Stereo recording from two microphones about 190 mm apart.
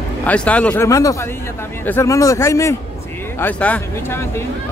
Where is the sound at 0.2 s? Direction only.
5° left (ahead or behind).